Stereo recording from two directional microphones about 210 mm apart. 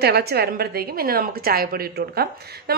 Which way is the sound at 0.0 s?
50° right (ahead or behind).